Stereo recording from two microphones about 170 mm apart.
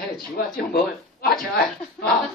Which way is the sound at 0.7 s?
65° left (ahead or behind).